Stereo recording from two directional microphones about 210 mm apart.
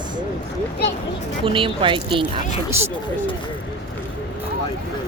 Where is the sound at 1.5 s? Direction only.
25° right (ahead or behind).